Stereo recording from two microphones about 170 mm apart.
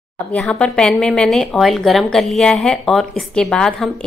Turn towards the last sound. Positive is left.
turn(degrees=5)  # may be behind; listen again after turning